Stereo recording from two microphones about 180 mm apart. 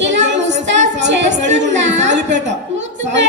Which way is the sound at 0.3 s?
80° right.